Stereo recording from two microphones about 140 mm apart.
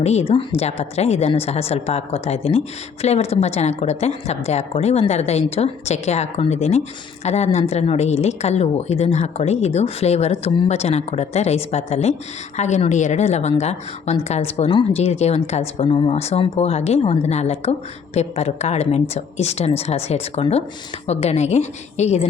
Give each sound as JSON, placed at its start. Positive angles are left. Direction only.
{"t": 0.0, "sound": "a woman's voice", "side_deg": 50}
{"t": 15.9, "sound": "a woman's voice", "side_deg": 40}